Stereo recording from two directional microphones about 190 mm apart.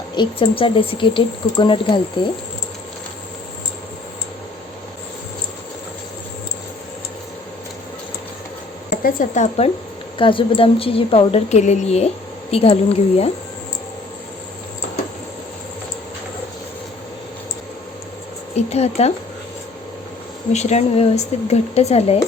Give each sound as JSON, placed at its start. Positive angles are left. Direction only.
{"t": 0.1, "sound": "speech", "side_deg": 25}
{"t": 9.0, "sound": "a woman's voice", "side_deg": 40}
{"t": 10.2, "sound": "a woman's voice", "side_deg": 25}
{"t": 18.5, "sound": "a woman's voice", "side_deg": 35}
{"t": 20.5, "sound": "a woman's voice", "side_deg": 35}